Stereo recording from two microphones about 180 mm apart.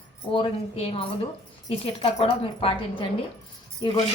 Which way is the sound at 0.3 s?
30° left (ahead or behind).